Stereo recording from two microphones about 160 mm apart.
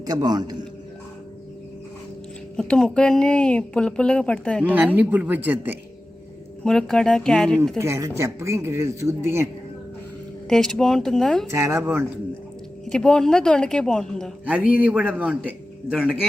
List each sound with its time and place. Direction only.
0.0 s a man's voice: 25° right (ahead or behind)
2.6 s speech: 5° left (ahead or behind)
4.7 s speech: 10° right (ahead or behind)
6.7 s speech: 5° left (ahead or behind)
7.8 s speech: 20° right (ahead or behind)
10.5 s speech: centre (ahead or behind)
11.5 s speech: 15° right (ahead or behind)
12.8 s speech: 5° left (ahead or behind)
14.4 s speech: 10° right (ahead or behind)